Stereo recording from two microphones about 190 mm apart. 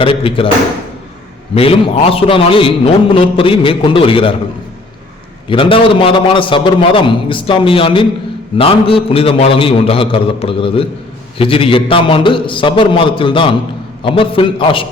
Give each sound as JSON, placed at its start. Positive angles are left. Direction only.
{"t": 0.0, "sound": "a man's voice", "side_deg": 30}
{"t": 1.5, "sound": "a man's voice", "side_deg": 30}
{"t": 5.5, "sound": "a man's voice", "side_deg": 25}